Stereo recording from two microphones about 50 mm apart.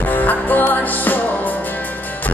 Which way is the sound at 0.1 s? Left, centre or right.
Left.